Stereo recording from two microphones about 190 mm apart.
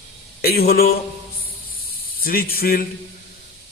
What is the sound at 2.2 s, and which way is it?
Speech, 50° left (ahead or behind).